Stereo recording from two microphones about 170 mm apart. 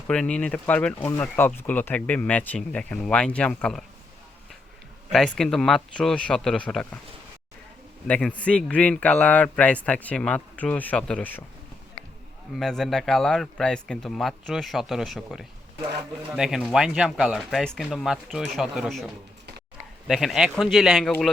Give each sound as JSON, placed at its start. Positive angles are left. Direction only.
{"t": 0.1, "sound": "speech", "side_deg": 5}
{"t": 5.1, "sound": "speech", "side_deg": 5}
{"t": 8.0, "sound": "speech", "side_deg": 5}
{"t": 12.5, "sound": "speech", "side_deg": 5}